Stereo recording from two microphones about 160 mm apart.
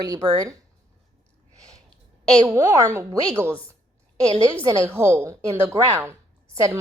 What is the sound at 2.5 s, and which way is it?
A woman's voice, 20° right (ahead or behind).